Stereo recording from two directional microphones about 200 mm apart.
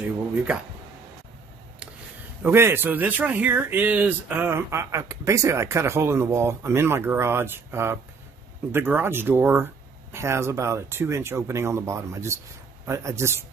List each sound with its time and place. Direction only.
2.4 s speech: 10° right (ahead or behind)